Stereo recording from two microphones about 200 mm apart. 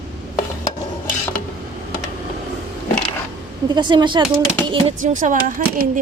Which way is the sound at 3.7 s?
20° right (ahead or behind).